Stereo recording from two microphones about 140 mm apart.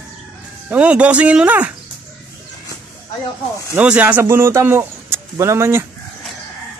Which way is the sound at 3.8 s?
10° right (ahead or behind).